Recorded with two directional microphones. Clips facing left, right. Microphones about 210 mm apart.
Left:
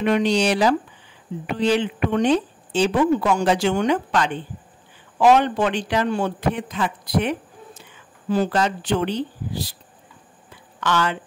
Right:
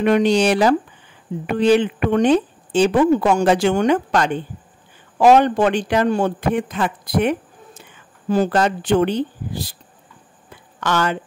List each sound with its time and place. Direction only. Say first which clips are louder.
0.0 s speech: right 4 dB; 50° right (ahead or behind)
10.8 s speech: right 2 dB; 45° right (ahead or behind)